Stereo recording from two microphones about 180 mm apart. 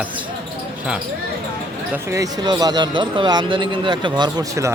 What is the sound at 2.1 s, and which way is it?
Speech, 20° right (ahead or behind).